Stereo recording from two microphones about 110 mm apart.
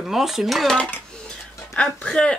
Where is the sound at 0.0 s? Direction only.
5° right (ahead or behind).